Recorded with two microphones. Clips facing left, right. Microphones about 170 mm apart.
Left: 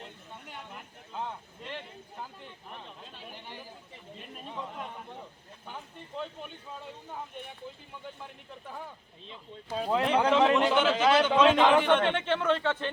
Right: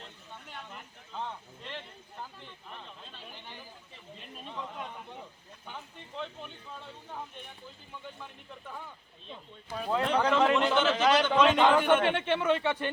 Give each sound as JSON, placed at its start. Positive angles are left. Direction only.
{"t": 0.0, "sound": "vehicle", "side_deg": 10}
{"t": 4.4, "sound": "a man's voice", "side_deg": 5}
{"t": 9.9, "sound": "speech", "side_deg": 15}
{"t": 10.2, "sound": "speech", "side_deg": 25}
{"t": 10.5, "sound": "a man's voice", "side_deg": 10}